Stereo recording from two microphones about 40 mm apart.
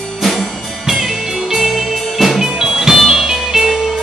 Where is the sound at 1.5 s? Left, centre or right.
Centre.